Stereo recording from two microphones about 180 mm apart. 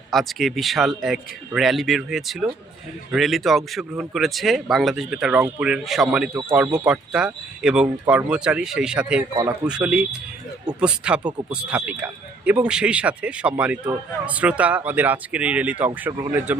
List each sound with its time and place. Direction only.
0.1 s speech: centre (ahead or behind)
6.3 s speech: 15° right (ahead or behind)
9.3 s speech: 20° right (ahead or behind)
9.6 s speech: 5° right (ahead or behind)